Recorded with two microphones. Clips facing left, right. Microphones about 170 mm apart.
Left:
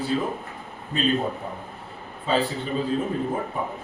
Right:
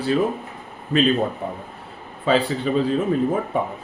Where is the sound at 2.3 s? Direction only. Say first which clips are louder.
Right 5 dB; 75° right (ahead or behind).